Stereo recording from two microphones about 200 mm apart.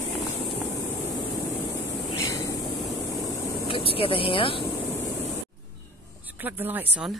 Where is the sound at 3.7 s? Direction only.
25° left (ahead or behind).